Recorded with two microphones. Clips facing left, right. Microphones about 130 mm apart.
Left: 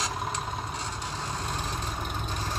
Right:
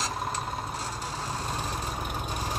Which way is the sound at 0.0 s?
Centre (ahead or behind).